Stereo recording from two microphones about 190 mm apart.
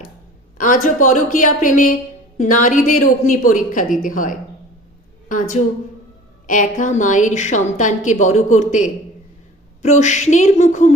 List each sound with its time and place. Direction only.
0.6 s a woman's voice: 45° left (ahead or behind)
10.0 s a woman's voice: 40° left (ahead or behind)